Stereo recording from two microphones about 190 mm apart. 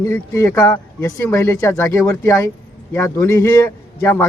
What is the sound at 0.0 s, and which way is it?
Speech, 15° left (ahead or behind).